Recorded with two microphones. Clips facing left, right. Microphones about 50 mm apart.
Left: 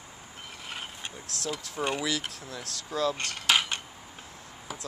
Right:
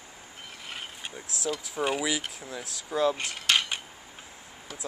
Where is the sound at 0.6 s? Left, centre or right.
Centre.